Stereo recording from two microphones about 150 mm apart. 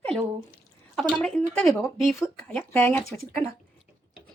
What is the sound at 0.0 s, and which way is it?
Drip, 5° left (ahead or behind).